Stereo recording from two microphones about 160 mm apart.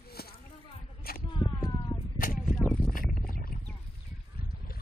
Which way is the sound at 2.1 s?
60° left (ahead or behind).